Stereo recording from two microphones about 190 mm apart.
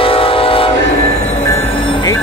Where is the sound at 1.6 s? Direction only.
25° left (ahead or behind).